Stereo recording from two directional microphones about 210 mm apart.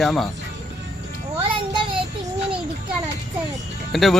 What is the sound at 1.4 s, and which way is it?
Child singing, 25° right (ahead or behind).